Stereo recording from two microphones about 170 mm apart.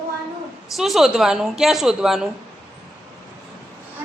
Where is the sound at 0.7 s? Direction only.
Centre (ahead or behind).